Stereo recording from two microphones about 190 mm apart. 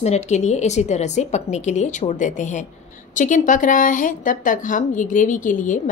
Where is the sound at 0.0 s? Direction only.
35° left (ahead or behind).